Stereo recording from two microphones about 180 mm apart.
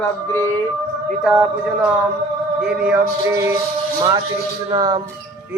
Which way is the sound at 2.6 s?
10° right (ahead or behind).